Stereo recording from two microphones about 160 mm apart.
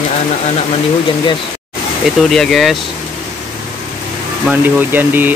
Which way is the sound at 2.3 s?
Centre (ahead or behind).